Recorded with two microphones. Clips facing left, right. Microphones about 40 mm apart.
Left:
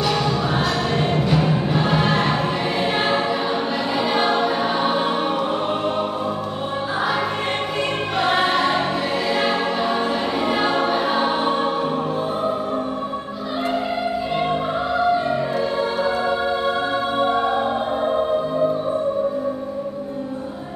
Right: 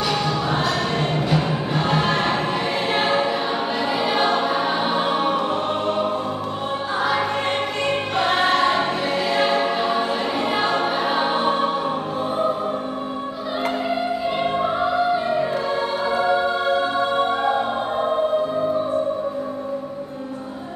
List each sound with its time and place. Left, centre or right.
0.1 s music: centre
2.9 s choir: centre
8.2 s music: centre
9.3 s choir: centre
16.0 s music: centre